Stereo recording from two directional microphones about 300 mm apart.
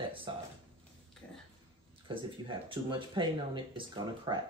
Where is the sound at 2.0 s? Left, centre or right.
Centre.